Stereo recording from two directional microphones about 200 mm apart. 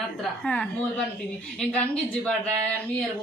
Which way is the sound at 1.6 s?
5° left (ahead or behind).